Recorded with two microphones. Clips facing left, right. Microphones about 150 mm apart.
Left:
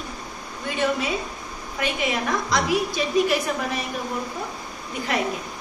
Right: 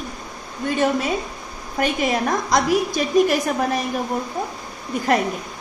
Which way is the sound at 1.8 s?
40° right (ahead or behind).